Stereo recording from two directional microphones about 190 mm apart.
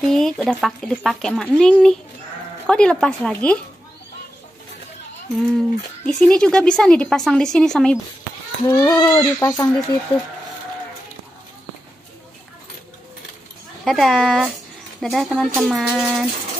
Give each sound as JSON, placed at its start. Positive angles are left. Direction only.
{"t": 0.0, "sound": "speech", "side_deg": 0}
{"t": 6.0, "sound": "speech", "side_deg": 5}
{"t": 8.6, "sound": "speech", "side_deg": 20}
{"t": 13.8, "sound": "speech", "side_deg": 0}